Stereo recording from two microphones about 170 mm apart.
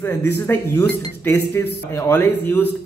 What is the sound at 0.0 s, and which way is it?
Speech, 20° left (ahead or behind).